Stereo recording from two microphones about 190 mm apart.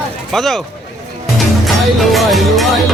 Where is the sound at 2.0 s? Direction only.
Centre (ahead or behind).